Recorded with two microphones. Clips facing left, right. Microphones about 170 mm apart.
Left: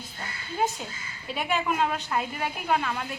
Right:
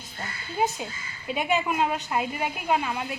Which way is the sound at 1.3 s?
15° right (ahead or behind).